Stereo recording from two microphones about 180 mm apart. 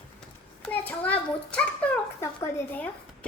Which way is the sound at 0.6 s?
10° left (ahead or behind).